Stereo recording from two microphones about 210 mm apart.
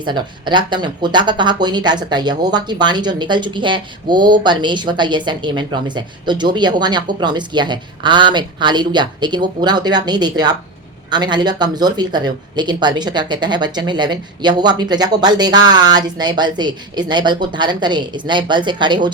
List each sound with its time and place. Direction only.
0.0 s speech: 20° right (ahead or behind)